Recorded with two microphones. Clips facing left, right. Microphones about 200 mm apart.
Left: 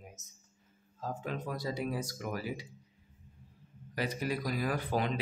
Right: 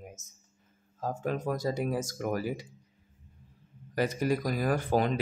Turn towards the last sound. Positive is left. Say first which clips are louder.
# right 5 dB
turn(degrees=-45)  # may be behind; listen again after turning